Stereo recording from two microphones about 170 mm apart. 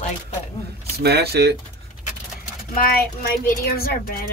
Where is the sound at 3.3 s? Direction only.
60° left (ahead or behind).